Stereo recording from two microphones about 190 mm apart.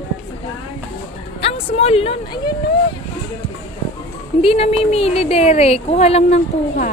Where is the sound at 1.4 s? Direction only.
30° left (ahead or behind).